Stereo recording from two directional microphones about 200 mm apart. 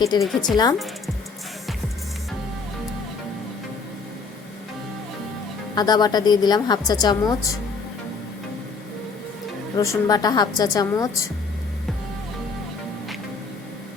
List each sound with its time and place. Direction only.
0.1 s a woman's voice: 20° left (ahead or behind)
5.7 s a woman's voice: 20° left (ahead or behind)
9.7 s a woman's voice: 15° left (ahead or behind)